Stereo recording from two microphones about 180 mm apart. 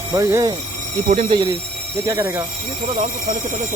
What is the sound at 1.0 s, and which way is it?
Speech, 45° right (ahead or behind).